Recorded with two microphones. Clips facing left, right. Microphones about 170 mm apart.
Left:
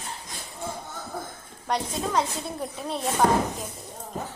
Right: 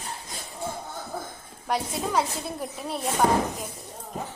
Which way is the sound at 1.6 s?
5° right (ahead or behind).